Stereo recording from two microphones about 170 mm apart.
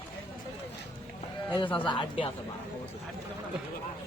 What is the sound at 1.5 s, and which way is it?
Speech, 30° left (ahead or behind).